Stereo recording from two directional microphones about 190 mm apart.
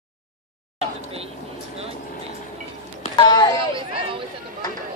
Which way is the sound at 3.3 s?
20° left (ahead or behind).